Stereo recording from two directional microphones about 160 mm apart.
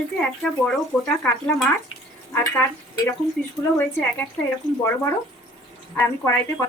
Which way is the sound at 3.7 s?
10° left (ahead or behind).